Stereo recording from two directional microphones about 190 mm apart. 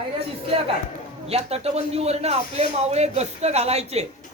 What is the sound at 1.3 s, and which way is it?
Speech, 35° right (ahead or behind).